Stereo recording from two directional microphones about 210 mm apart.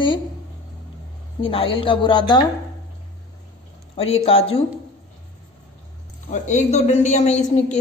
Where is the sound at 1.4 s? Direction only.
25° left (ahead or behind).